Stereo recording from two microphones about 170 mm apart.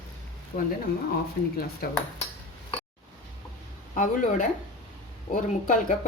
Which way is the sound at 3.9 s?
50° left (ahead or behind).